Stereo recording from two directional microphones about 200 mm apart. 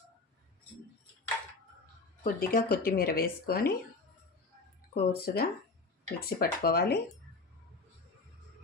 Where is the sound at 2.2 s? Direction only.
45° left (ahead or behind).